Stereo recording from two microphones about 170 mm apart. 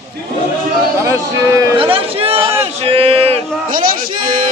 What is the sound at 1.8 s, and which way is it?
Speech, 30° right (ahead or behind).